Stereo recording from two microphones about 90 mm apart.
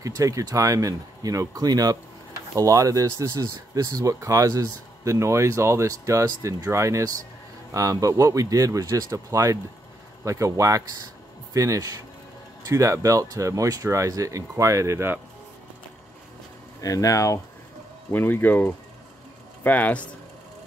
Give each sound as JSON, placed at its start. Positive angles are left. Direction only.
{"t": 0.0, "sound": "speech", "side_deg": -40}
{"t": 16.8, "sound": "speech", "side_deg": 40}
{"t": 18.1, "sound": "speech", "side_deg": 20}